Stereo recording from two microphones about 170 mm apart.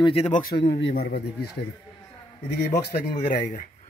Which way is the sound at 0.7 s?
70° left (ahead or behind).